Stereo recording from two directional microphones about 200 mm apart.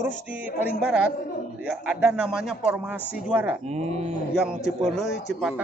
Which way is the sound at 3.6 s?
35° right (ahead or behind).